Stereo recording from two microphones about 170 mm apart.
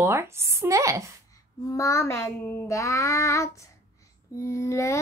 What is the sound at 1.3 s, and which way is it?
Child singing, 20° left (ahead or behind).